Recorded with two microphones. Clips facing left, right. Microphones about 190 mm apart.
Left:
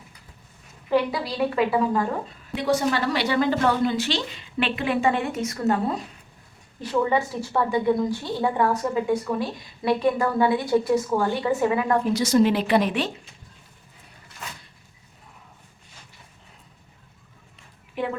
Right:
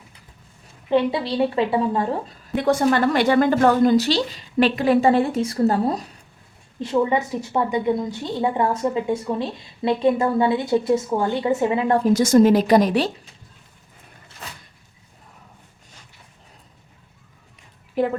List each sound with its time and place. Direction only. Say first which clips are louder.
0.9 s a woman's voice: right 3 dB; 25° right (ahead or behind)
2.6 s a woman's voice: right 5 dB; 50° right (ahead or behind)
6.7 s a woman's voice: right 2 dB; 25° right (ahead or behind)
12.1 s a woman's voice: right 6 dB; 45° right (ahead or behind)
18.0 s a woman's voice: right 6 dB; 40° right (ahead or behind)